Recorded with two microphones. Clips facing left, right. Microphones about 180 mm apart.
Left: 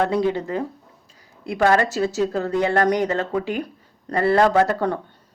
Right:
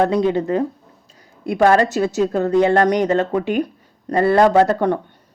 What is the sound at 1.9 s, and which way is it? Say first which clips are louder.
A man's voice: right 3 dB; 20° right (ahead or behind).